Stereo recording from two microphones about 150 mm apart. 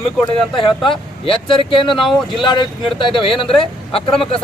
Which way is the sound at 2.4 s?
30° left (ahead or behind).